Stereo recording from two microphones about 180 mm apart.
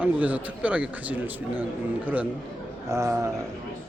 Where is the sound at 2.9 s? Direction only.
15° right (ahead or behind).